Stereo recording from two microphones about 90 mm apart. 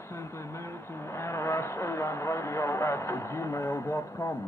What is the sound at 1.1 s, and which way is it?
Radio, 30° left (ahead or behind).